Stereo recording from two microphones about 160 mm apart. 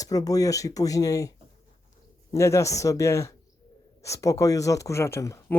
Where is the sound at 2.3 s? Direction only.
20° left (ahead or behind).